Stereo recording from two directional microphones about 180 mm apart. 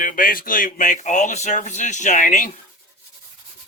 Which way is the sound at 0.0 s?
50° left (ahead or behind).